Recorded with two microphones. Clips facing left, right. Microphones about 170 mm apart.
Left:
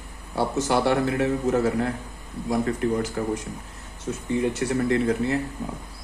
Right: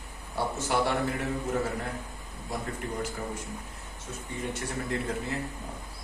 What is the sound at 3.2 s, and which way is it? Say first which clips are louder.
Speech: left 9 dB; 90° left.